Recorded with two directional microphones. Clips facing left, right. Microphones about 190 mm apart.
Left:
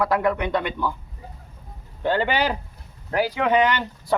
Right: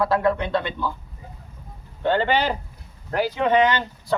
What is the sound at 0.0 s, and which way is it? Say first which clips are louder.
Speech: right 1 dB; 15° left (ahead or behind).